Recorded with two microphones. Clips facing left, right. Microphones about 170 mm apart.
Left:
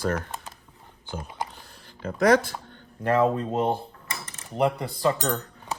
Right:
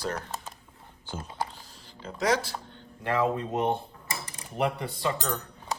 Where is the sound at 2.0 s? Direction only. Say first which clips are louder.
Left 7 dB; 55° left (ahead or behind).